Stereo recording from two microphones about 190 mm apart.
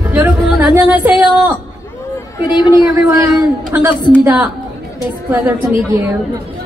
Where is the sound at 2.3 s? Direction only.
20° left (ahead or behind).